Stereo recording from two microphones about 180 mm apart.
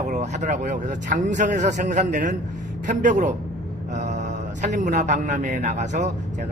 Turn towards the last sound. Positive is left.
turn(degrees=-40)  # may be behind; listen again after turning